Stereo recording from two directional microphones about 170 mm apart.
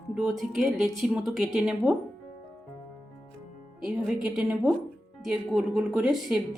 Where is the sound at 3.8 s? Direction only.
5° right (ahead or behind).